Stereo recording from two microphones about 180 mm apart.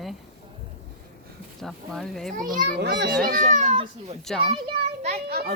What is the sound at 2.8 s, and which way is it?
Speech, 75° right (ahead or behind).